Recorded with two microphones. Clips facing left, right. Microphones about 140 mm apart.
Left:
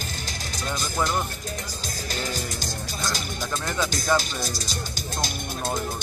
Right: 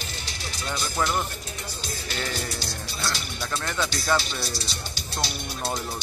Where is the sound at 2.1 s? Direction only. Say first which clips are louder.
Left 1 dB; 40° left (ahead or behind).